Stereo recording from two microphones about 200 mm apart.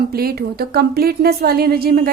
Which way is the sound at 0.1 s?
50° right (ahead or behind).